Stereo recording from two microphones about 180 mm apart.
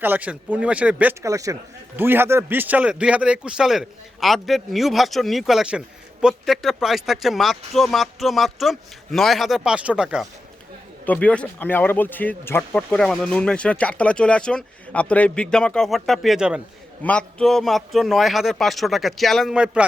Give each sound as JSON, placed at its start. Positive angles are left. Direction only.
{"t": 0.0, "sound": "speech", "side_deg": -10}
{"t": 11.0, "sound": "speech", "side_deg": 10}